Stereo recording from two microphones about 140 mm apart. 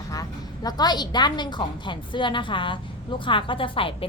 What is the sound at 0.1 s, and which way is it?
A woman's voice, 25° left (ahead or behind).